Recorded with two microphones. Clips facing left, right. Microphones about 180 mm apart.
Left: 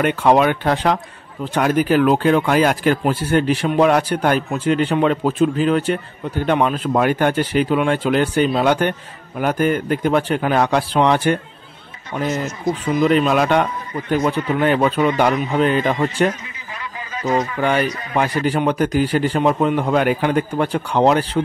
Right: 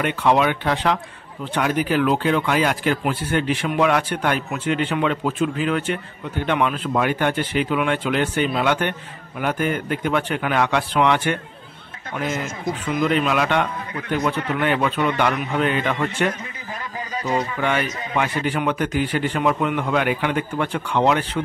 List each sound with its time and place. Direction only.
0.0 s speech: 45° left (ahead or behind)
13.0 s speech: 40° left (ahead or behind)
17.6 s speech: 40° left (ahead or behind)